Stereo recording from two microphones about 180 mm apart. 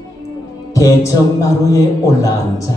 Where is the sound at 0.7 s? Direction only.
20° left (ahead or behind).